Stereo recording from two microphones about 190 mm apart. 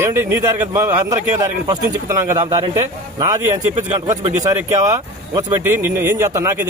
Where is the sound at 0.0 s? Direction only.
15° right (ahead or behind).